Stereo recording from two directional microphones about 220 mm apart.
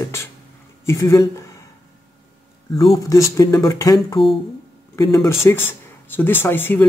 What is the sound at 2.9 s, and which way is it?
Speech, 15° left (ahead or behind).